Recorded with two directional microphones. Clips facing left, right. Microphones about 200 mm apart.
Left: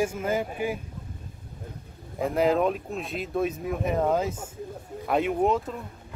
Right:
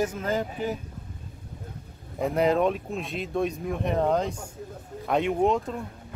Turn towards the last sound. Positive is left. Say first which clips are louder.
# right 1 dB
turn(degrees=0)  # may be behind; listen again after turning